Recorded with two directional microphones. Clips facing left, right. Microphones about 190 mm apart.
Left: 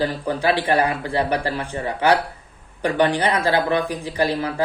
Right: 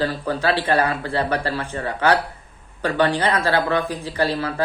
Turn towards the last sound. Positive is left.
turn(degrees=15)  # may be behind; listen again after turning